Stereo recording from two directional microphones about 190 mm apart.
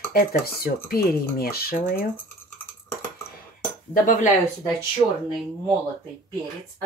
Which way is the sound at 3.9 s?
45° left (ahead or behind).